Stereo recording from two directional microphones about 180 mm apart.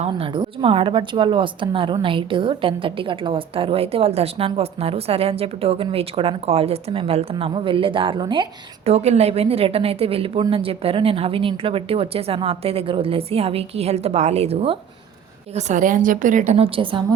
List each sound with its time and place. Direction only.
0.0 s a woman's voice: 30° right (ahead or behind)